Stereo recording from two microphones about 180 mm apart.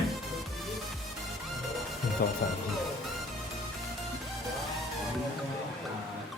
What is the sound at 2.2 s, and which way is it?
Speech, 60° left (ahead or behind).